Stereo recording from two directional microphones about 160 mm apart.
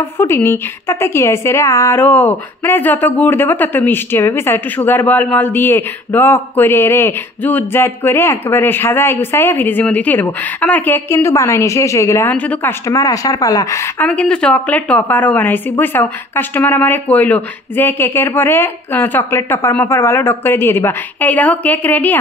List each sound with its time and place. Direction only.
0.2 s a woman's voice: 15° left (ahead or behind)
14.0 s a woman's voice: 10° left (ahead or behind)